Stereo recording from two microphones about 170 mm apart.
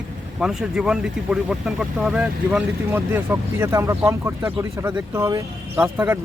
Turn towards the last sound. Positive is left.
turn(degrees=-10)  # may be behind; listen again after turning